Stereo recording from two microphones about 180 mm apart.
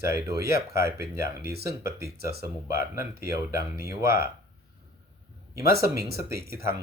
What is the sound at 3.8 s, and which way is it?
Speech, 15° right (ahead or behind).